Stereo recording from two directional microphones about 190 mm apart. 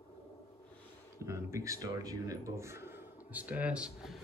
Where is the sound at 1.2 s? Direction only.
15° right (ahead or behind).